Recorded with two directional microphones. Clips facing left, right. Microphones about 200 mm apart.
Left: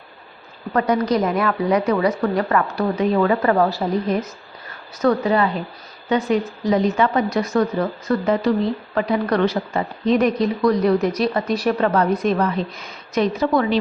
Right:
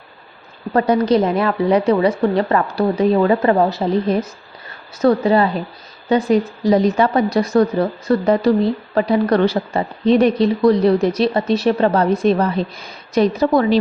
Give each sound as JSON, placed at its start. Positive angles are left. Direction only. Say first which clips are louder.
{"t": 0.7, "sound": "a woman's voice", "louder": "right 4 dB", "side_deg": -30}